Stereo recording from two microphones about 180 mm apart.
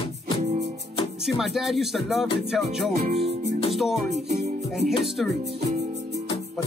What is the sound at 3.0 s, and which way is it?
Music, 35° right (ahead or behind).